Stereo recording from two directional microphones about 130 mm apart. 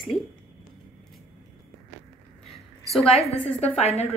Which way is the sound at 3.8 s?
55° left (ahead or behind).